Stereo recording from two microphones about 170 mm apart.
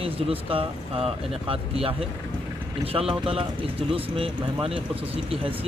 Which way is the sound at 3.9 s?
35° right (ahead or behind).